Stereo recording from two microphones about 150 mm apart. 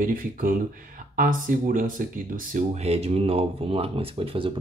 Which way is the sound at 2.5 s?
50° right (ahead or behind).